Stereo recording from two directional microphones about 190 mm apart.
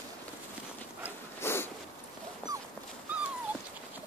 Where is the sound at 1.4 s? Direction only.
10° left (ahead or behind).